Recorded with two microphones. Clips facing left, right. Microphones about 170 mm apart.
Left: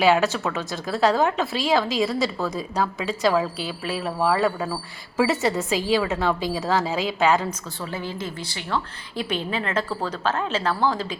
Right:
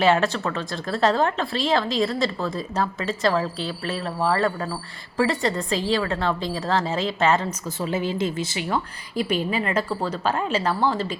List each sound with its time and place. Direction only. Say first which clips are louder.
0.0 s speech: left 1 dB; centre (ahead or behind)
7.8 s a woman's voice: right 8 dB; 20° right (ahead or behind)
9.1 s a woman's voice: right 3 dB; 5° right (ahead or behind)